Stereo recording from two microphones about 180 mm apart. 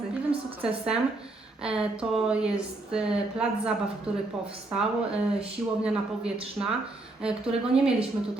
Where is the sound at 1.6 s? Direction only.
5° right (ahead or behind).